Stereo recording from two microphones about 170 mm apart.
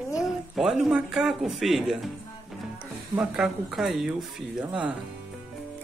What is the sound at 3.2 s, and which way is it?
Speech, 5° right (ahead or behind).